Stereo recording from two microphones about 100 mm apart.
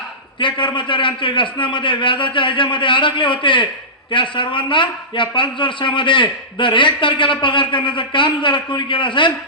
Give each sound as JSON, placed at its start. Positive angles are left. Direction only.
{"t": 0.3, "sound": "a man's voice", "side_deg": 55}